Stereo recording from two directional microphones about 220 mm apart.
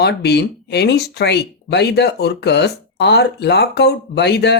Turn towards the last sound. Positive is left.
turn(degrees=50)  # may be behind; listen again after turning